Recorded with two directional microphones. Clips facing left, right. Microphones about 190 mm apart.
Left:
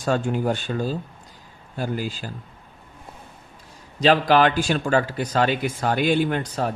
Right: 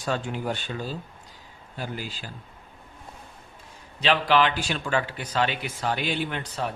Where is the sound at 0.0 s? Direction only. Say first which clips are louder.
Left 6 dB; 45° left (ahead or behind).